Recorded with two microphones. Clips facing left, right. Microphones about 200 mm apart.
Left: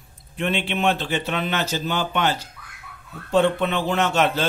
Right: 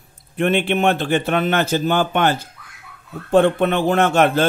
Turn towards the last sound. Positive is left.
turn(degrees=-50)  # may be behind; listen again after turning